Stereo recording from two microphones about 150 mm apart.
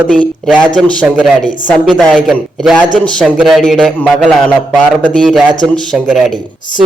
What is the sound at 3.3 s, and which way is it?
A man's voice, 5° right (ahead or behind).